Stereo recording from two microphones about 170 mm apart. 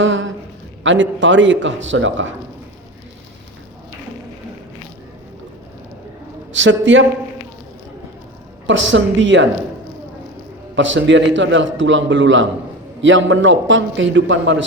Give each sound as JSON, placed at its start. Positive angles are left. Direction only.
{"t": 0.0, "sound": "a sound", "side_deg": -90}
{"t": 0.9, "sound": "a man's voice", "side_deg": -90}
{"t": 6.5, "sound": "a man's voice", "side_deg": -90}
{"t": 8.6, "sound": "a man's voice", "side_deg": -90}
{"t": 10.8, "sound": "a man's voice", "side_deg": -90}